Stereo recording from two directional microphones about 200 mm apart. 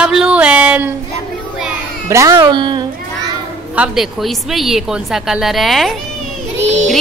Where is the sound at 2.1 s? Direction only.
15° right (ahead or behind).